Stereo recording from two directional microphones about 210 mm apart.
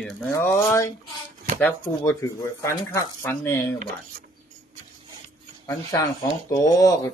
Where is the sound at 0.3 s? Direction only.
15° left (ahead or behind).